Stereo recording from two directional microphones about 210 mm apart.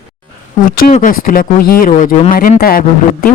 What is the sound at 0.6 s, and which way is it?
Speech, 40° left (ahead or behind).